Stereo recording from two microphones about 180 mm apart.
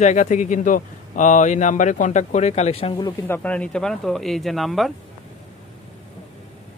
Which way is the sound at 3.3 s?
5° left (ahead or behind).